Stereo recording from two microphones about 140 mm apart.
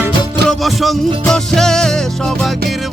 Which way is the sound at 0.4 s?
Centre (ahead or behind).